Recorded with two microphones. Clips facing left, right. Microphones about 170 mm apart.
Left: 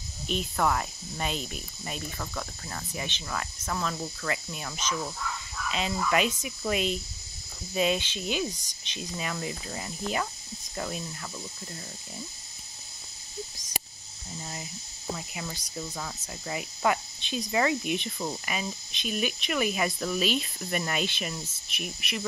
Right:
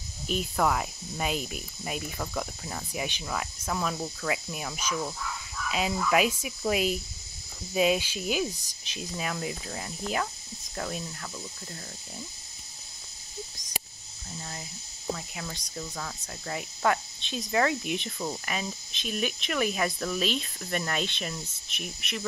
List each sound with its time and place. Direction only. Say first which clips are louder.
0.3 s speech: right 1 dB; 5° right (ahead or behind)
15.1 s speech: left 1 dB; 5° left (ahead or behind)